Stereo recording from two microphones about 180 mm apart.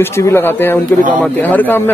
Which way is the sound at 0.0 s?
15° left (ahead or behind).